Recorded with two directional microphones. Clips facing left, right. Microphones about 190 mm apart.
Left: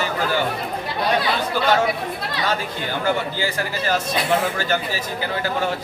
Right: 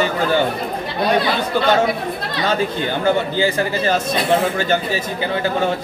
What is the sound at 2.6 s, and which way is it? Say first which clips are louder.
A man's voice: right 6 dB; 25° right (ahead or behind).